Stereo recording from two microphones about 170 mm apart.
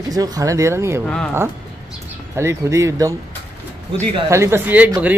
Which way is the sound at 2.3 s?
15° right (ahead or behind).